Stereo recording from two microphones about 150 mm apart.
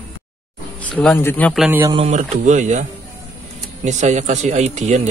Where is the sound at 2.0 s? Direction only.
50° right (ahead or behind).